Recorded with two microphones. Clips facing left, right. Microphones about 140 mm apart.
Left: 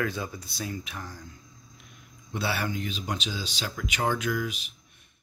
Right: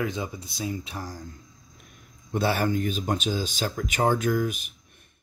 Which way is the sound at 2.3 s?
45° right (ahead or behind).